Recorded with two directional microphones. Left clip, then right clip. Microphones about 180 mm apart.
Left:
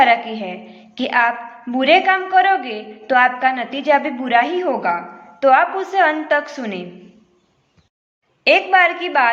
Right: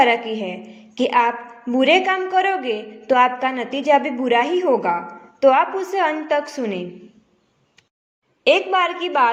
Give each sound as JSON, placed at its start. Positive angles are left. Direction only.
{"t": 0.3, "sound": "a woman's voice", "side_deg": -40}
{"t": 8.4, "sound": "a woman's voice", "side_deg": -35}